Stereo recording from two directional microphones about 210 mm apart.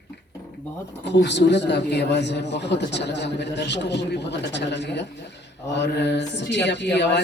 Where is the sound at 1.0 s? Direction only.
55° left (ahead or behind).